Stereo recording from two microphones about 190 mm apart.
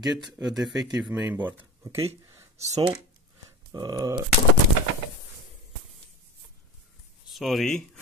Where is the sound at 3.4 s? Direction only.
20° right (ahead or behind).